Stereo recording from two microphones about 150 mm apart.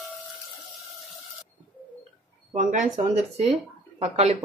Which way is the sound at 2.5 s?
55° right (ahead or behind).